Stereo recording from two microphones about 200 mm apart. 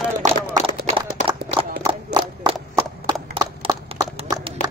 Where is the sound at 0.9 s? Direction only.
25° right (ahead or behind).